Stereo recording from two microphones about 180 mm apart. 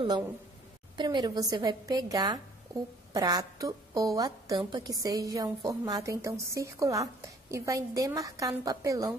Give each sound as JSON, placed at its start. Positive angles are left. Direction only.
{"t": 0.9, "sound": "a woman's voice", "side_deg": -25}